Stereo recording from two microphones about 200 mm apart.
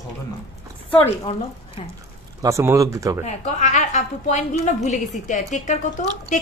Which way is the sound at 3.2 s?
35° left (ahead or behind).